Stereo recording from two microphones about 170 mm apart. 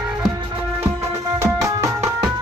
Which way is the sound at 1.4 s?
20° right (ahead or behind).